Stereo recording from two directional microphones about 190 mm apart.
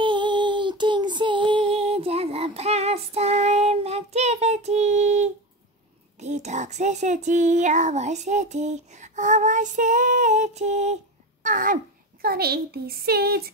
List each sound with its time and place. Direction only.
0.0 s child singing: 25° right (ahead or behind)
6.1 s a sound: 35° right (ahead or behind)
11.4 s a child's voice: 45° right (ahead or behind)